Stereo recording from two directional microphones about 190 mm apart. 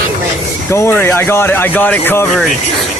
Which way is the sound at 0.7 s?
15° left (ahead or behind).